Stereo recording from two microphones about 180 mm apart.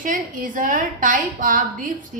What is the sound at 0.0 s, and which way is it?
A woman's voice, 50° right (ahead or behind).